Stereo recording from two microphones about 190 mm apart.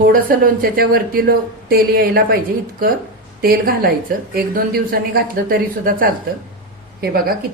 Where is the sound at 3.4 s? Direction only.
50° right (ahead or behind).